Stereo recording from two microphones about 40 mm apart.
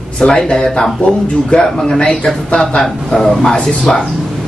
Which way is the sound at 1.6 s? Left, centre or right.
Centre.